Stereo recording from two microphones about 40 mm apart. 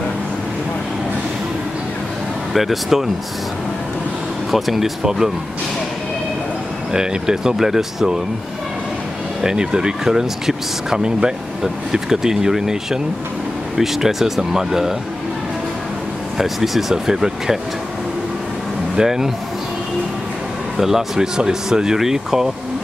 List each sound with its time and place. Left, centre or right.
2.5 s speech: centre
4.5 s speech: centre
6.9 s speech: centre
9.4 s speech: centre
16.3 s speech: centre
18.9 s speech: centre
20.7 s speech: centre